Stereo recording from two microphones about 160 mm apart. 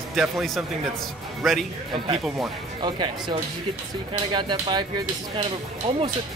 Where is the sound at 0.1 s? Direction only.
Centre (ahead or behind).